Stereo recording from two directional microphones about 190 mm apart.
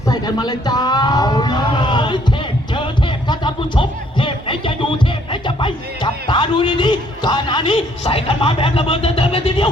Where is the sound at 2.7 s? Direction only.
25° left (ahead or behind).